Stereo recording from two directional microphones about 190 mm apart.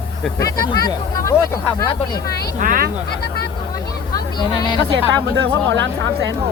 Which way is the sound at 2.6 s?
45° right (ahead or behind).